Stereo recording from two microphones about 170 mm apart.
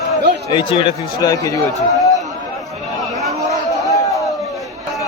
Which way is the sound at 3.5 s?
20° left (ahead or behind).